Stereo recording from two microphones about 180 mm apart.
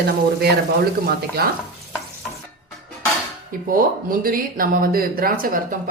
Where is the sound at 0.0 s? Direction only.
65° right (ahead or behind).